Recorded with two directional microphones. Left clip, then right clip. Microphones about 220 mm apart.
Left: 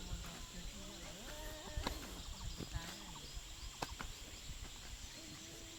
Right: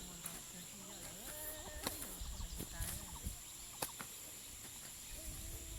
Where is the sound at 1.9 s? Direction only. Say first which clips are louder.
Left 1 dB; 20° right (ahead or behind).